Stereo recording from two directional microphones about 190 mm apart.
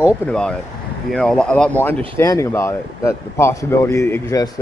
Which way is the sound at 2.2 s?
15° left (ahead or behind).